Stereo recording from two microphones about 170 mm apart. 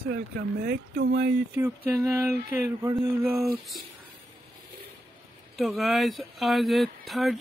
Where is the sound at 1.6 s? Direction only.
10° right (ahead or behind).